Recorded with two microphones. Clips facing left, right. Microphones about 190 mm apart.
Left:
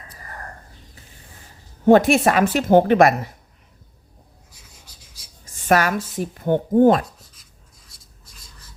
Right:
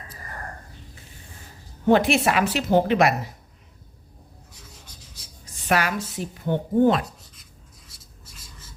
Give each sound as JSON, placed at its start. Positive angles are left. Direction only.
{"t": 1.9, "sound": "a woman's voice", "side_deg": 45}
{"t": 5.5, "sound": "a woman's voice", "side_deg": 45}